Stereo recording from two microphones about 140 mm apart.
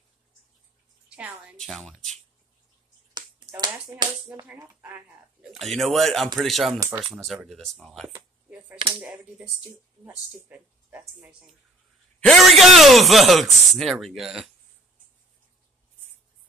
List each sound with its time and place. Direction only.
1.1 s a man's voice: 10° right (ahead or behind)
3.2 s finger snapping: 30° right (ahead or behind)
4.3 s a man's voice: 10° right (ahead or behind)
6.8 s speech: 15° right (ahead or behind)
7.4 s a man's voice: centre (ahead or behind)
8.1 s a sound: 10° right (ahead or behind)
9.7 s speech: 15° right (ahead or behind)
12.2 s a man's voice: centre (ahead or behind)